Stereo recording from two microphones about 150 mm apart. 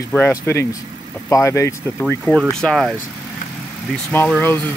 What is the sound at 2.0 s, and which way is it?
Speech, centre (ahead or behind).